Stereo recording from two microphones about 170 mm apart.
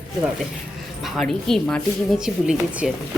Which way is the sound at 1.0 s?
Centre (ahead or behind).